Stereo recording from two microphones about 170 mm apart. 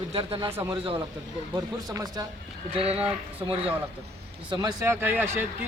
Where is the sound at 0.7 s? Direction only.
30° right (ahead or behind).